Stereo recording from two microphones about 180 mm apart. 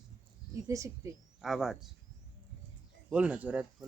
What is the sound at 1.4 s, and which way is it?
Speech, centre (ahead or behind).